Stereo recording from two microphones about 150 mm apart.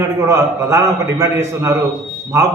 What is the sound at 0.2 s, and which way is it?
A man's voice, 20° right (ahead or behind).